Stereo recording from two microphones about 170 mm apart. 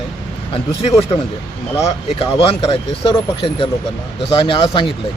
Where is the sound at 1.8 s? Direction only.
35° left (ahead or behind).